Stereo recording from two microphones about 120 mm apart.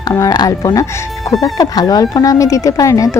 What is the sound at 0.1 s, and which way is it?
Speech, 30° left (ahead or behind).